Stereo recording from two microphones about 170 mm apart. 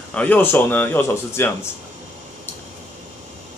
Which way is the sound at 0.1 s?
10° left (ahead or behind).